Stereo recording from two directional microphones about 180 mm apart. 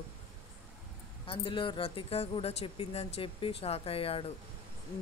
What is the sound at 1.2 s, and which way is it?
Speech, 30° left (ahead or behind).